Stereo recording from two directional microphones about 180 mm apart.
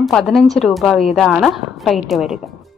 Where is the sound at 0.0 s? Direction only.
Centre (ahead or behind).